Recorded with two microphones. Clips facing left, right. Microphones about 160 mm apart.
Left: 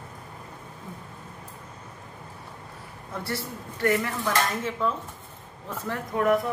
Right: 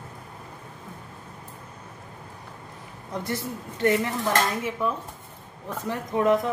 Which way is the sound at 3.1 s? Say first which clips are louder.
Right 3 dB; 20° right (ahead or behind).